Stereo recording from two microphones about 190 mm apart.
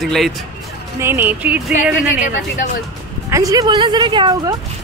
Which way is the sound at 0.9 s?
10° right (ahead or behind).